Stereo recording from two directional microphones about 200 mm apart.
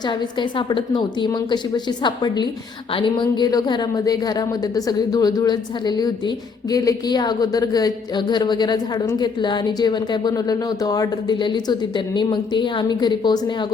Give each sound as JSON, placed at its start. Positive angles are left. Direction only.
{"t": 0.1, "sound": "speech", "side_deg": 25}